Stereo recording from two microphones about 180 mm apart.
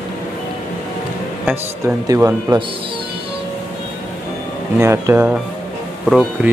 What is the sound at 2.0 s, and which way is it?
Speech, 20° right (ahead or behind).